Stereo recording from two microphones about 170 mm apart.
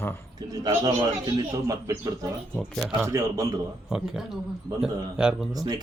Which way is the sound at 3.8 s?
5° right (ahead or behind).